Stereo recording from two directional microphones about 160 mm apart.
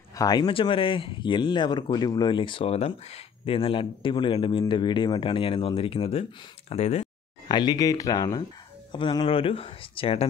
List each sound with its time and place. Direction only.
0.1 s speech: 25° left (ahead or behind); by 7.1 s 40° left (ahead or behind)
7.4 s speech: 25° left (ahead or behind)